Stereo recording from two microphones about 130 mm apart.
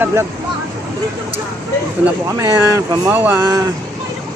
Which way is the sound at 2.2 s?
20° right (ahead or behind).